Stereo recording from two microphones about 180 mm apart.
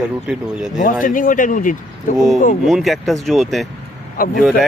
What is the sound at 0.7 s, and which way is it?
Speech, 45° left (ahead or behind).